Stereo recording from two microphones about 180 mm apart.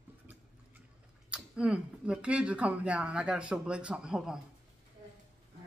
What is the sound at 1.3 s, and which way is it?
Speech, 5° right (ahead or behind).